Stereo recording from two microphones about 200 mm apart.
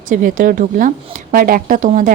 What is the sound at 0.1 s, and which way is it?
Speech, 45° right (ahead or behind).